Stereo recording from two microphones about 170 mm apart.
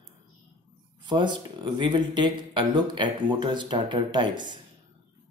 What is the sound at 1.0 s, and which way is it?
Speech, 25° right (ahead or behind).